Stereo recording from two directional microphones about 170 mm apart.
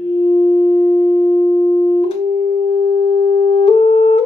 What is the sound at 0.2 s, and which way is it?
Music, 35° left (ahead or behind).